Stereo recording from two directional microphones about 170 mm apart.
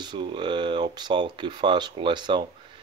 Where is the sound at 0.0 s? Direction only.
25° right (ahead or behind).